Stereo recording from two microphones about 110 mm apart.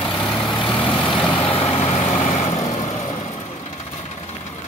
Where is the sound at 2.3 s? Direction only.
75° left (ahead or behind).